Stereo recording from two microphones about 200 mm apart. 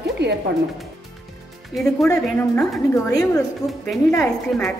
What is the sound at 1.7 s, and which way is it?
A woman's voice, centre (ahead or behind).